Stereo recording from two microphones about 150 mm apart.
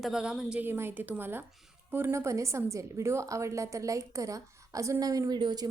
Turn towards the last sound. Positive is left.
turn(degrees=-30)  # may be behind; listen again after turning